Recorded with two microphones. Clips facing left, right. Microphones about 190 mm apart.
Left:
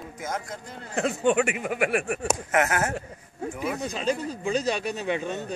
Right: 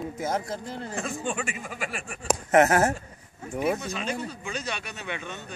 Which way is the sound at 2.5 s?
35° right (ahead or behind).